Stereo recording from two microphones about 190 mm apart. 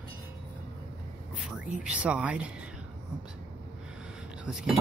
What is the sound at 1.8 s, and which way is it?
Speech, 5° right (ahead or behind).